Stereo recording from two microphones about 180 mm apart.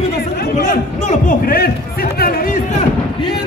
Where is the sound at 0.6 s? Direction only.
40° left (ahead or behind).